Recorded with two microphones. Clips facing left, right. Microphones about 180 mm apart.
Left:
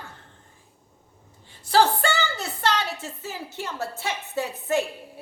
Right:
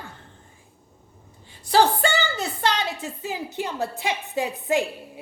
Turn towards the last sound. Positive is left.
turn(degrees=-15)  # may be behind; listen again after turning